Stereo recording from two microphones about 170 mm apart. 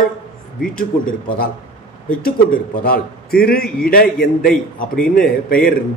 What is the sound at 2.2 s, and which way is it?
A man's voice, 60° left (ahead or behind).